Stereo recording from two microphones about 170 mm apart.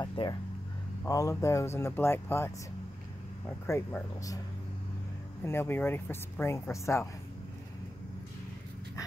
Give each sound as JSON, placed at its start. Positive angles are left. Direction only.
{"t": 0.0, "sound": "speech", "side_deg": 25}
{"t": 3.6, "sound": "speech", "side_deg": 15}
{"t": 5.4, "sound": "speech", "side_deg": 15}